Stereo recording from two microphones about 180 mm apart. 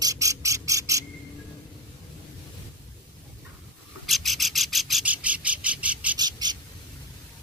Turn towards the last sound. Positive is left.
turn(degrees=-20)  # may be behind; listen again after turning